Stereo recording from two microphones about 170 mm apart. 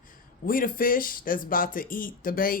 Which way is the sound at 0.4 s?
55° left (ahead or behind).